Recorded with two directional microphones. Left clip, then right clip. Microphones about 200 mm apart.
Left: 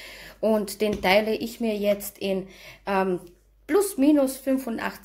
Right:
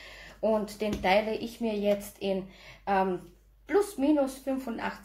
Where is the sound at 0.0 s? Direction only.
60° left (ahead or behind).